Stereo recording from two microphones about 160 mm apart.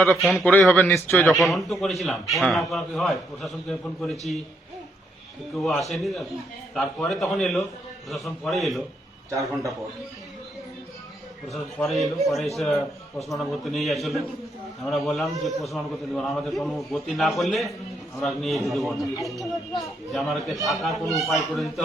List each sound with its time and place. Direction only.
0.0 s a man's voice: centre (ahead or behind)
1.1 s a man's voice: centre (ahead or behind)
5.5 s a man's voice: centre (ahead or behind)
9.3 s a man's voice: 20° right (ahead or behind)
11.8 s a man's voice: centre (ahead or behind)